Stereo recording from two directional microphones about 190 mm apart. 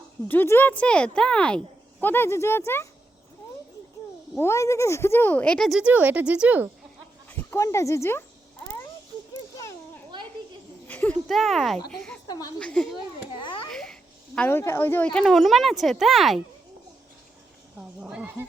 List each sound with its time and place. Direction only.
0.3 s speech: 10° left (ahead or behind)
4.4 s speech: 15° left (ahead or behind); by 6.7 s 5° right (ahead or behind)
7.3 s speech: 15° left (ahead or behind)
10.8 s speech: 10° left (ahead or behind)
12.3 s speech: 20° left (ahead or behind)
12.5 s speech: 5° left (ahead or behind)
13.3 s a sound: 25° left (ahead or behind)
13.7 s speech: 5° left (ahead or behind)
17.7 s speech: 5° right (ahead or behind)